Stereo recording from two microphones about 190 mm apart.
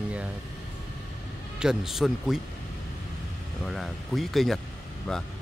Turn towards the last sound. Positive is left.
turn(degrees=5)  # may be behind; listen again after turning